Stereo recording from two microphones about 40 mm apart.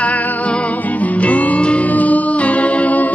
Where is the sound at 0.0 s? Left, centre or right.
Left.